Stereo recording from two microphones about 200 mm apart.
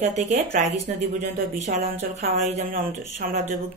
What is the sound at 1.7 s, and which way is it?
Speech, 35° right (ahead or behind).